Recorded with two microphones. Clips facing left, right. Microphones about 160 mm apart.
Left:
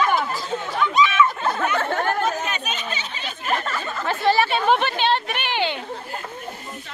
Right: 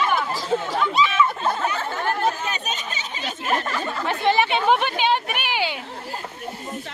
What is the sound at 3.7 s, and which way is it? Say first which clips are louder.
Chatter: right 1 dB; 20° right (ahead or behind).